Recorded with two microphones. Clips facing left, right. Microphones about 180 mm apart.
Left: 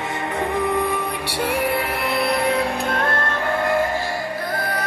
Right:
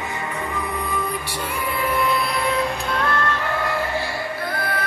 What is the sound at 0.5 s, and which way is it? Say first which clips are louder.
Music: left 7 dB; 65° left (ahead or behind).